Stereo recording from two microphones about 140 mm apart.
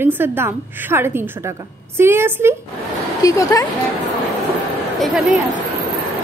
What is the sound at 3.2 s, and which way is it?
Speech, 25° left (ahead or behind).